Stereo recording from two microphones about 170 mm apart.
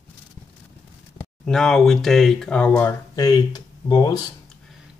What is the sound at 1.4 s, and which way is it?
Speech, 5° left (ahead or behind).